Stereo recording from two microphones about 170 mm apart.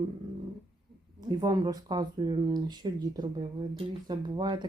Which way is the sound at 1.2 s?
25° right (ahead or behind).